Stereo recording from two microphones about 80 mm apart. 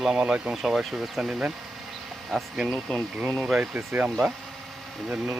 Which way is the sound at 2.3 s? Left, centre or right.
Centre.